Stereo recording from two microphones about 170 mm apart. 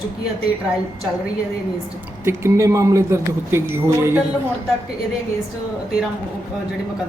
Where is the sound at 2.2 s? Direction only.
15° right (ahead or behind).